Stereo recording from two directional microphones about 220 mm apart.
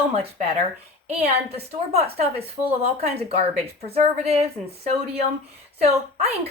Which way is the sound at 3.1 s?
25° right (ahead or behind).